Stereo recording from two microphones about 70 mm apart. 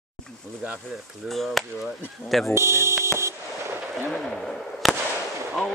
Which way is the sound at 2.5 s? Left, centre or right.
Right.